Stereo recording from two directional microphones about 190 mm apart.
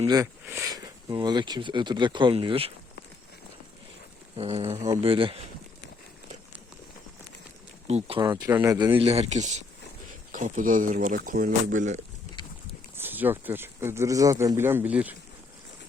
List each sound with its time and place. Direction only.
0.1 s speech: 15° right (ahead or behind)
4.4 s speech: 30° right (ahead or behind)
7.9 s speech: 35° right (ahead or behind)
8.2 s speech: 20° right (ahead or behind)
9.0 s speech: 35° right (ahead or behind)
12.4 s boat: 25° left (ahead or behind)
13.0 s speech: 10° right (ahead or behind)